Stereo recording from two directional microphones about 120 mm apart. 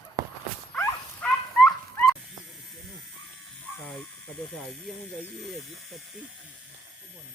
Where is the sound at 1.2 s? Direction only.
10° left (ahead or behind).